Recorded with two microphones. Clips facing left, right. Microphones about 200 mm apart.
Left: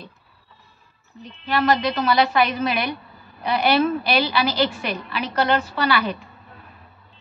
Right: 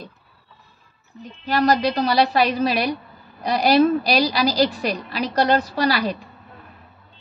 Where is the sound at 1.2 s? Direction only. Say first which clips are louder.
Right 2 dB; 40° right (ahead or behind).